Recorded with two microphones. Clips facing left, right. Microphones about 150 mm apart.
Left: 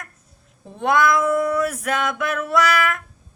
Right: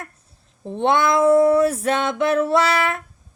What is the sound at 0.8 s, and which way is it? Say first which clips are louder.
A woman's voice: right 1 dB; 25° right (ahead or behind).